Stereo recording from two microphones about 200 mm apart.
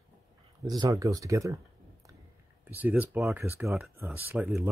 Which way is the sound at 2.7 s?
10° right (ahead or behind).